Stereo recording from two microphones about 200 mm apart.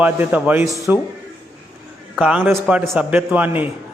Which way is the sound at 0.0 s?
10° right (ahead or behind).